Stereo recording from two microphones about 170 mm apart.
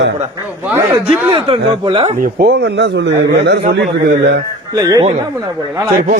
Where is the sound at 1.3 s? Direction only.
30° right (ahead or behind).